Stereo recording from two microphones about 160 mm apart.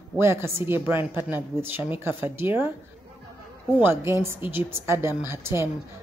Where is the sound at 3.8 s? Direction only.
15° right (ahead or behind).